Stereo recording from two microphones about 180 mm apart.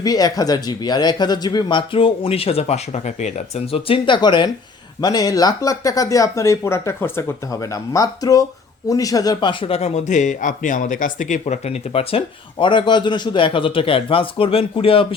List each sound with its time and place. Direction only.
0.0 s speech: 20° left (ahead or behind)